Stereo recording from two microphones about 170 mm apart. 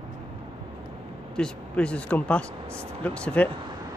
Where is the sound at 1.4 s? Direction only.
5° left (ahead or behind).